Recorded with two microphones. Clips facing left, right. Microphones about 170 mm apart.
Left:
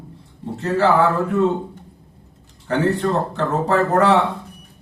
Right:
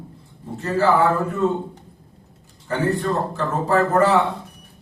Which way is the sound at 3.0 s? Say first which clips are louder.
Left 2 dB; 70° left (ahead or behind).